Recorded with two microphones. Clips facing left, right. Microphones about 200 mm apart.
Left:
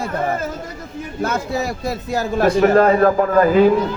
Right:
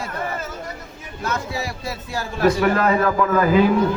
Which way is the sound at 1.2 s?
50° left (ahead or behind).